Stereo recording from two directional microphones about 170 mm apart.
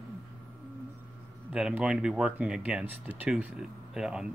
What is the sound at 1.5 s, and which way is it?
Speech, 5° right (ahead or behind).